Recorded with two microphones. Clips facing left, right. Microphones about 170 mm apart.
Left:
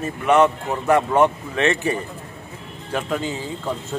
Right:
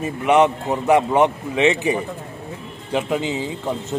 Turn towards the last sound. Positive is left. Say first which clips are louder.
# right 2 dB
turn(degrees=-15)  # may be behind; listen again after turning